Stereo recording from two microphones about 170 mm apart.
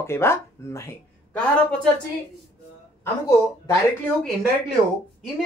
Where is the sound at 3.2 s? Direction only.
15° left (ahead or behind).